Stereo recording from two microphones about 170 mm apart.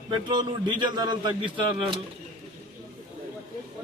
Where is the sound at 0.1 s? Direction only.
25° right (ahead or behind).